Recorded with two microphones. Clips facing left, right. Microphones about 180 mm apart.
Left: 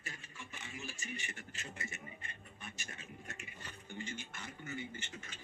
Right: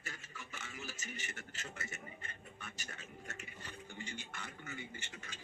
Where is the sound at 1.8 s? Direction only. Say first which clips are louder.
Even; 40° right (ahead or behind).